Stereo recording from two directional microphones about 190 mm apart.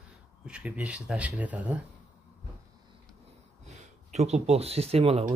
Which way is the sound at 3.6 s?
35° right (ahead or behind).